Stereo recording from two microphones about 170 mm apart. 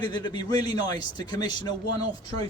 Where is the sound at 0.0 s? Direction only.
25° left (ahead or behind).